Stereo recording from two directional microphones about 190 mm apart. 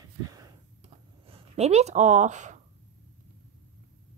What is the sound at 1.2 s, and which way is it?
Speech, 30° right (ahead or behind).